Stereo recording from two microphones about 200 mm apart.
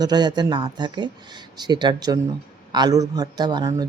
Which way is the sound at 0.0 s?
20° right (ahead or behind).